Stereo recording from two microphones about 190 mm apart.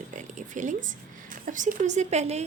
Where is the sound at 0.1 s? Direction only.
40° right (ahead or behind).